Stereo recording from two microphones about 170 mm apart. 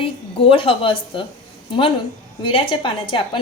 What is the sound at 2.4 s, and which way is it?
Speech, 30° left (ahead or behind).